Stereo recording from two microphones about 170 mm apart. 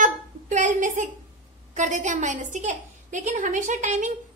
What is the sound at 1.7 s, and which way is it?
A woman's voice, 45° right (ahead or behind).